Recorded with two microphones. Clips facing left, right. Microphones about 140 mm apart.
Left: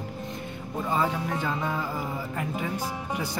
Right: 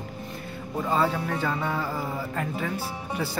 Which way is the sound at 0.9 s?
15° left (ahead or behind).